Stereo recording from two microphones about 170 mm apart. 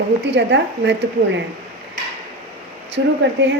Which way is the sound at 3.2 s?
90° right.